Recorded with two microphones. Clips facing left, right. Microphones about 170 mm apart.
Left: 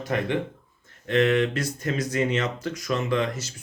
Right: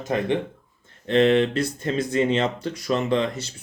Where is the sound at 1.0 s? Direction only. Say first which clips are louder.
Right 3 dB; 30° right (ahead or behind).